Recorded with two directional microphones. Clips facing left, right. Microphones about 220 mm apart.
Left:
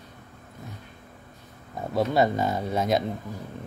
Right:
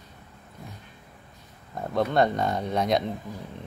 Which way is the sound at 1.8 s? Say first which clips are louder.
Even; 5° left (ahead or behind).